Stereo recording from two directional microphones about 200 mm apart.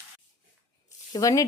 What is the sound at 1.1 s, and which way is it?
Speech, 15° left (ahead or behind).